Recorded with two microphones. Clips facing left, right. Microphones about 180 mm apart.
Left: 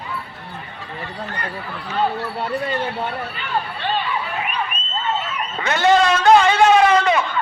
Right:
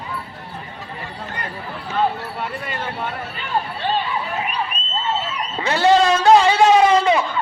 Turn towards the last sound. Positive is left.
turn(degrees=-30)  # may be behind; listen again after turning